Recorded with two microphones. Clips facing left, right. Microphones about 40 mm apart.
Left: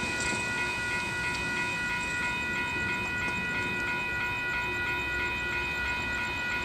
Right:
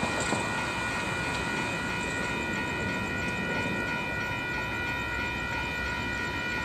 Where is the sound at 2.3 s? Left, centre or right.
Centre.